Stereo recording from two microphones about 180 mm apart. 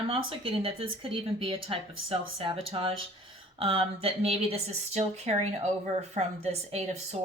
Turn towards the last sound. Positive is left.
turn(degrees=-35)  # may be behind; listen again after turning